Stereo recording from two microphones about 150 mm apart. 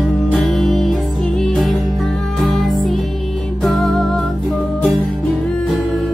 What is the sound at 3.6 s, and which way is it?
Music, centre (ahead or behind).